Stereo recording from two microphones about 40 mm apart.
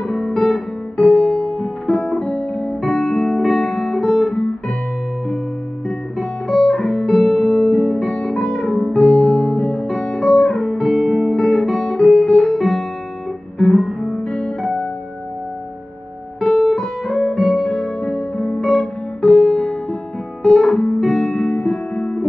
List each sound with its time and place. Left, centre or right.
0.1 s guitar: centre
0.9 s music: left
6.1 s guitar: left
7.2 s music: centre
7.8 s music: left
13.6 s guitar: centre
14.6 s music: left
16.3 s music: centre
17.6 s music: left
20.4 s guitar: centre
21.5 s music: left